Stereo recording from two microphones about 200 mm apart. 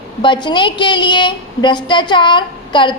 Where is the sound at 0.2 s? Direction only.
25° left (ahead or behind).